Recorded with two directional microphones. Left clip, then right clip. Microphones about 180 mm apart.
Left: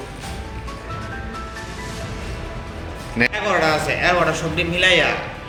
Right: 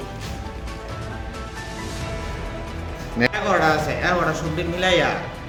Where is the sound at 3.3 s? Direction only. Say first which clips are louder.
Right 1 dB; 55° right (ahead or behind).